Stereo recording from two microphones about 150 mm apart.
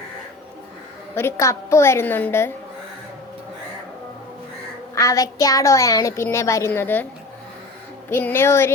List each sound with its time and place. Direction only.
1.1 s a woman's voice: 20° left (ahead or behind)
4.9 s a woman's voice: 20° left (ahead or behind)
8.1 s a woman's voice: 15° left (ahead or behind)